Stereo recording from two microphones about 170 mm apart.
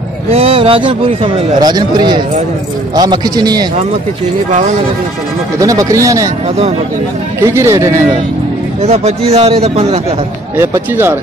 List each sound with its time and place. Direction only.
0.3 s a man's voice: 35° right (ahead or behind)
5.6 s a man's voice: 20° right (ahead or behind)
7.3 s speech: 15° right (ahead or behind)
8.8 s a man's voice: 40° right (ahead or behind)
10.6 s speech: 15° right (ahead or behind)